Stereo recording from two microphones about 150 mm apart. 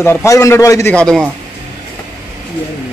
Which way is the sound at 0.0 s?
20° left (ahead or behind).